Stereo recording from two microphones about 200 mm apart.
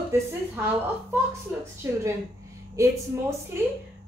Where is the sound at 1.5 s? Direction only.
10° right (ahead or behind).